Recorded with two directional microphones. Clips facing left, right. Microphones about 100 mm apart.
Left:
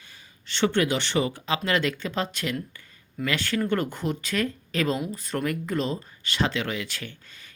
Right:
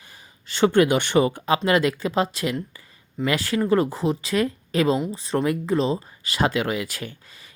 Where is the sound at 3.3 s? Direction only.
30° right (ahead or behind).